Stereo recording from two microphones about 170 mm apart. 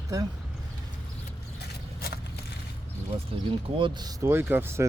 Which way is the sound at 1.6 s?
65° left (ahead or behind).